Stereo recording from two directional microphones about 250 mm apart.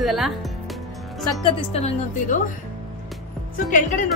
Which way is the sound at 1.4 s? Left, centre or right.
Left.